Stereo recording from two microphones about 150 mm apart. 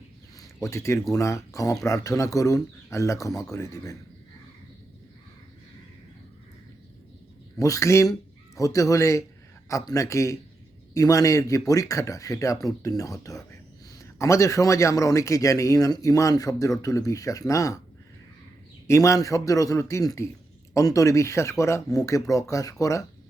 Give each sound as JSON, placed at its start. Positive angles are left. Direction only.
{"t": 0.3, "sound": "a sound", "side_deg": 20}
{"t": 1.1, "sound": "a man's voice", "side_deg": 20}
{"t": 7.6, "sound": "a man's voice", "side_deg": 20}
{"t": 18.9, "sound": "a man's voice", "side_deg": 20}